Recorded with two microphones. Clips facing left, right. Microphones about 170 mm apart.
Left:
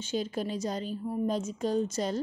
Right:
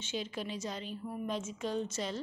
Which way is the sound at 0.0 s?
40° left (ahead or behind).